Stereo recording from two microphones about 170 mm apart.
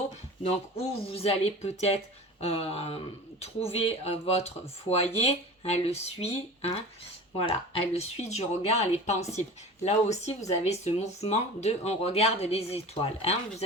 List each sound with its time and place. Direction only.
0.5 s speech: 35° left (ahead or behind)